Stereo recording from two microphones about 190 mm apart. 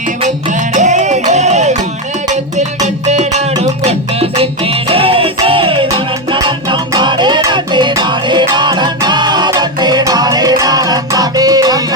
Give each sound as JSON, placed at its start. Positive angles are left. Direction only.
{"t": 0.7, "sound": "music", "side_deg": -40}
{"t": 2.8, "sound": "music", "side_deg": -35}